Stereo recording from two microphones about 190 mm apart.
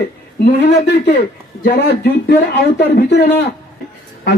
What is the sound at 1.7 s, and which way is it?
Speech, 60° left (ahead or behind).